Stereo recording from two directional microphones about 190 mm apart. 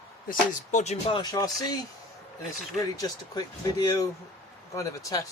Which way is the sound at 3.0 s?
20° left (ahead or behind).